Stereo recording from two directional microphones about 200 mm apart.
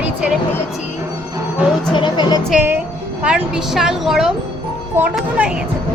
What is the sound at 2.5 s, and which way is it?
A woman's voice, 10° right (ahead or behind).